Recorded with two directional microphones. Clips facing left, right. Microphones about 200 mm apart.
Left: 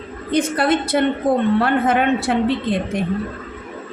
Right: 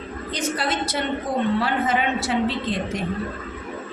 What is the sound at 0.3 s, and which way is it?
Speech, 55° left (ahead or behind).